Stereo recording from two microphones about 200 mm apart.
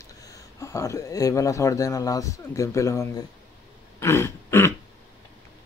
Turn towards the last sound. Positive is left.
turn(degrees=10)  # may be behind; listen again after turning